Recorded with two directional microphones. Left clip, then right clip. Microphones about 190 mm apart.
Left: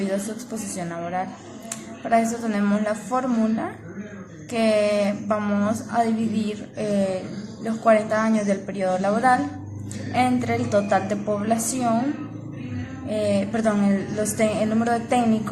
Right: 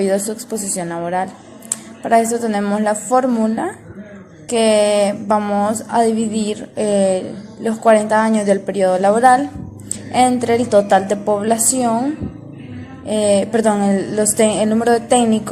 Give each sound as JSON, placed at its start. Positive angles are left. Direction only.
{"t": 0.8, "sound": "speech", "side_deg": -35}
{"t": 13.1, "sound": "speech", "side_deg": -40}